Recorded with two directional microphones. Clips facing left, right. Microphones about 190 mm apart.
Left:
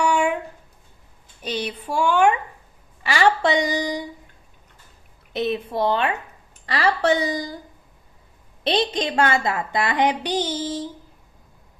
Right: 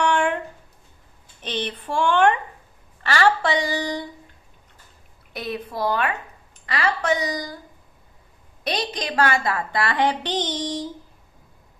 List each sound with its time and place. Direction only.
0.0 s a sound: 10° left (ahead or behind)
1.4 s a woman's voice: 10° left (ahead or behind)
5.3 s a woman's voice: 25° left (ahead or behind)
8.6 s a woman's voice: 25° left (ahead or behind); by 10.9 s 5° left (ahead or behind)